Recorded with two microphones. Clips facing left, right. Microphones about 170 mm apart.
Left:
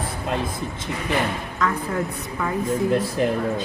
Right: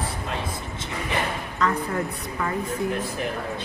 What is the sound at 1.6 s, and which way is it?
Speech, centre (ahead or behind).